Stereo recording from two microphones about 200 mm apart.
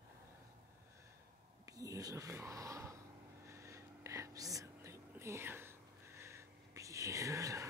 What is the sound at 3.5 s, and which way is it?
Whispering, 15° right (ahead or behind).